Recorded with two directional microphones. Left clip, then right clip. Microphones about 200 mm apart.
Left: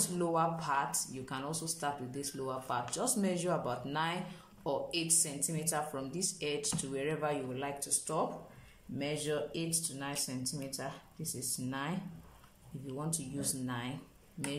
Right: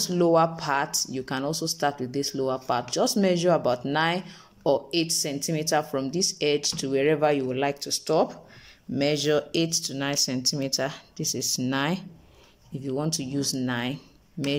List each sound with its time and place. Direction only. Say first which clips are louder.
0.1 s speech: right 12 dB; 40° right (ahead or behind)